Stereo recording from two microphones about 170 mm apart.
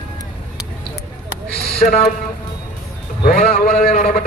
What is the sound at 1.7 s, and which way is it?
Speech, 40° left (ahead or behind).